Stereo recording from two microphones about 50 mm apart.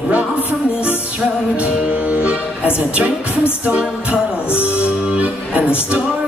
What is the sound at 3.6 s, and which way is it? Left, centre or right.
Music, right.